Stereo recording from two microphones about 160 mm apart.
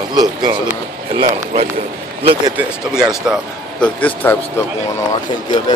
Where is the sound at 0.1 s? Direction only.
25° right (ahead or behind).